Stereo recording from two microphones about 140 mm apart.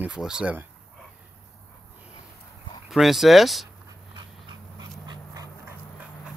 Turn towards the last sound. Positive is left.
turn(degrees=-25)  # may be behind; listen again after turning